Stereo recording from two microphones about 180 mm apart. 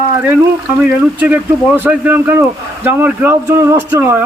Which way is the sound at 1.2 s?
10° right (ahead or behind).